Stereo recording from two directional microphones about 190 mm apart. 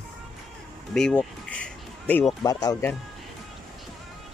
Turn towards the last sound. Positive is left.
turn(degrees=20)  # may be behind; listen again after turning